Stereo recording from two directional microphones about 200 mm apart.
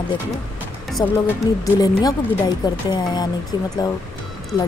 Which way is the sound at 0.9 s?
10° left (ahead or behind).